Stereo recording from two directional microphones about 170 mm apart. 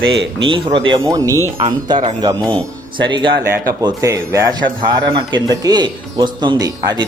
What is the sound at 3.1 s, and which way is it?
Speech, 25° right (ahead or behind).